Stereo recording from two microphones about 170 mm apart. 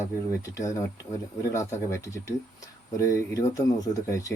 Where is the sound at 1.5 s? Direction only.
15° left (ahead or behind).